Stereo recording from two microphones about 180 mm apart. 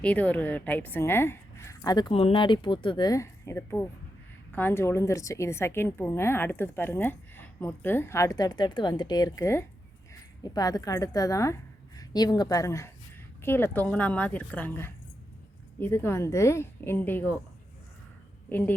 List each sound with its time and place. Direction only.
0.0 s a woman's voice: 10° left (ahead or behind)
18.4 s speech: 10° left (ahead or behind)